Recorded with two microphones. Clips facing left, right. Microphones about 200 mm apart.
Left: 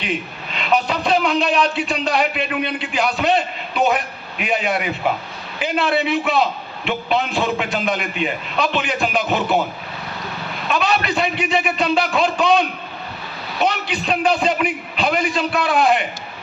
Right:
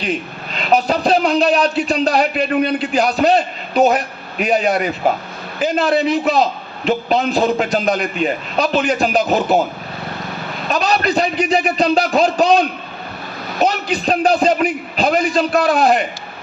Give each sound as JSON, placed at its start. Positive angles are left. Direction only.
{"t": 0.0, "sound": "a man's voice", "side_deg": -40}
{"t": 10.7, "sound": "a man's voice", "side_deg": -40}